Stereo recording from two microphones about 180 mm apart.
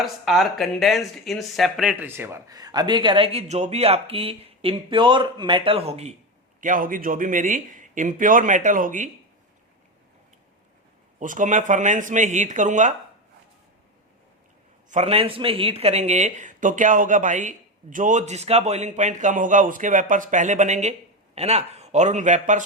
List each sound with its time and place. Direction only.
0.0 s speech: centre (ahead or behind); by 6.1 s 35° right (ahead or behind)
6.6 s speech: 50° right (ahead or behind)
11.2 s speech: 45° right (ahead or behind)
14.8 s a man's voice: 35° right (ahead or behind)